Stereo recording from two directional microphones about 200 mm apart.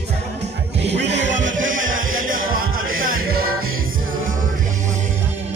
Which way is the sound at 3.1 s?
45° right (ahead or behind).